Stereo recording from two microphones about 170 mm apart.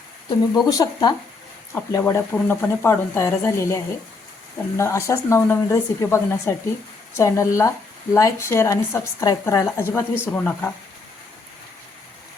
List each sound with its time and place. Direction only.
0.5 s a woman's voice: 20° left (ahead or behind)